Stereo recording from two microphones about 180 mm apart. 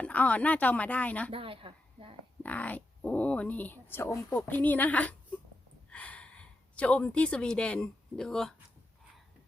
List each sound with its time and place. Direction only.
0.0 s speech: 10° left (ahead or behind)
1.3 s a sound: 30° right (ahead or behind)
2.4 s speech: 10° left (ahead or behind)